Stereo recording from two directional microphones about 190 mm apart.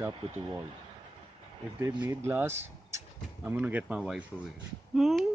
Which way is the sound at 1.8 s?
15° right (ahead or behind).